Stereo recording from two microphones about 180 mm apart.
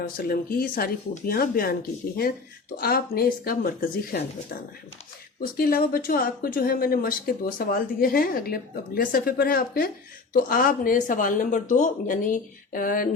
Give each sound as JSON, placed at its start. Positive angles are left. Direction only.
{"t": 0.0, "sound": "speech", "side_deg": 55}
{"t": 2.7, "sound": "speech", "side_deg": 55}
{"t": 5.5, "sound": "speech", "side_deg": 55}